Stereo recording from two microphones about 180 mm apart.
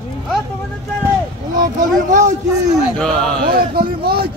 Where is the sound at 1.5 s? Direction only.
45° right (ahead or behind).